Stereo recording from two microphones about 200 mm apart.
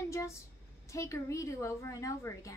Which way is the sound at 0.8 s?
15° left (ahead or behind).